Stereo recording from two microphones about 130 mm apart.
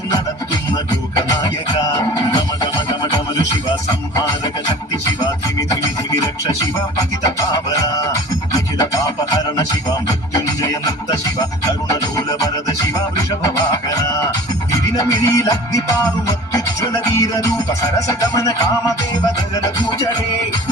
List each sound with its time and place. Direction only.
1.8 s music: 30° left (ahead or behind)